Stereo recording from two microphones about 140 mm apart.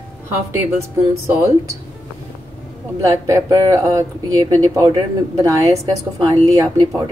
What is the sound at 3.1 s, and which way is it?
Speech, 25° right (ahead or behind).